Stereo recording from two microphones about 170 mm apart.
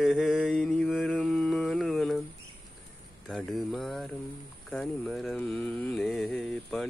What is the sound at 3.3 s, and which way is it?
Mantra, centre (ahead or behind).